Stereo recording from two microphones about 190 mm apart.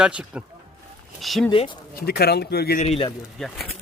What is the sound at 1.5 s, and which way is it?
Speech, 25° left (ahead or behind).